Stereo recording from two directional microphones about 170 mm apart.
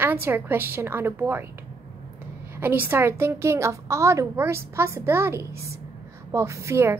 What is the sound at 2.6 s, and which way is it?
A woman's voice, 10° right (ahead or behind).